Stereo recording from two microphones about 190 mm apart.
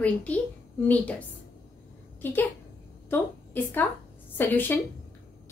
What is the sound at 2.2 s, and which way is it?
A woman's voice, 10° left (ahead or behind).